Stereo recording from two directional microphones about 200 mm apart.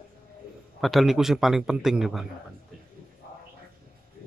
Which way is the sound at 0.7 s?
Centre (ahead or behind).